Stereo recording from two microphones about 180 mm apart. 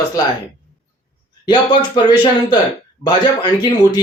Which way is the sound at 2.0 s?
25° left (ahead or behind).